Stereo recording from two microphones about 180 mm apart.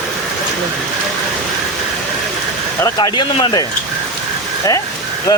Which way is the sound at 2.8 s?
20° left (ahead or behind).